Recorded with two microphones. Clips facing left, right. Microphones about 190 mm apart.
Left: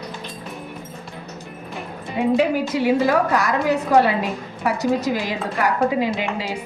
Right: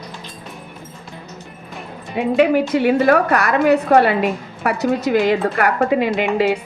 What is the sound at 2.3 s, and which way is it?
A woman's voice, 60° right (ahead or behind).